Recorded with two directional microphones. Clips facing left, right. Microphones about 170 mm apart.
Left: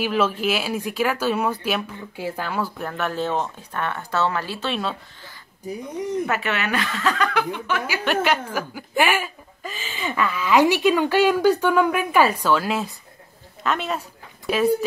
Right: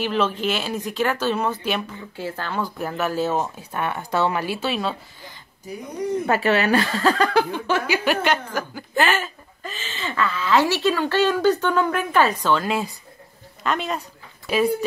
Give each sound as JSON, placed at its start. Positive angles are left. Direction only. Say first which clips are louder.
{"t": 0.0, "sound": "speech", "louder": "left 1 dB", "side_deg": 5}
{"t": 2.8, "sound": "speech", "louder": "right 2 dB", "side_deg": -5}
{"t": 6.2, "sound": "speech", "louder": "right 5 dB", "side_deg": -35}
{"t": 8.0, "sound": "speech", "louder": "even", "side_deg": 0}